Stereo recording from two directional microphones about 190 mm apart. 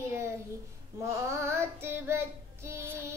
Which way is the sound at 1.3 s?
15° right (ahead or behind).